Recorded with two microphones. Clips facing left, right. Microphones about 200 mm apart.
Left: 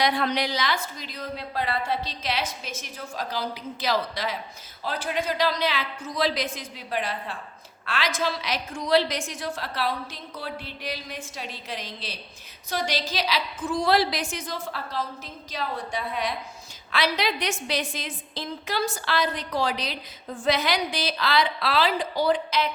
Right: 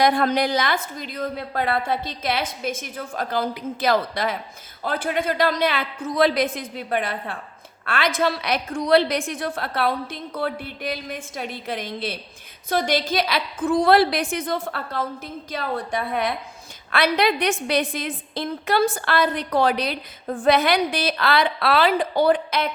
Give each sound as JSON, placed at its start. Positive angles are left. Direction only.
{"t": 0.0, "sound": "a woman's voice", "side_deg": -50}